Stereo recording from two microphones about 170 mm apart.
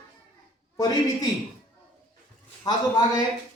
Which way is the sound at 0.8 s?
20° left (ahead or behind).